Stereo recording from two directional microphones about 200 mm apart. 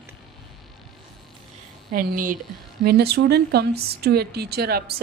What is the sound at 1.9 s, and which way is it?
Speech, 45° right (ahead or behind).